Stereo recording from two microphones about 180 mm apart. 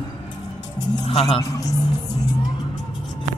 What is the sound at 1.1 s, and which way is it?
Speech, 35° left (ahead or behind).